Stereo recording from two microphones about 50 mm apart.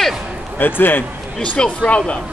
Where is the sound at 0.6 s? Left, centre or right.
Left.